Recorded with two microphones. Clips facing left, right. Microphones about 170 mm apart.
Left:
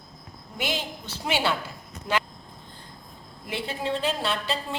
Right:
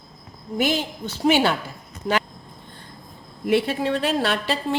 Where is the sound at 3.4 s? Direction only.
70° right (ahead or behind).